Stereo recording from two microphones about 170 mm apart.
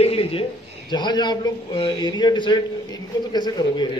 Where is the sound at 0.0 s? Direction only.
35° left (ahead or behind).